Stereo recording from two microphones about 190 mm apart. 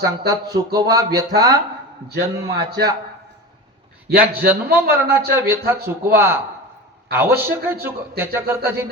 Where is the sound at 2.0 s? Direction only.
60° right (ahead or behind).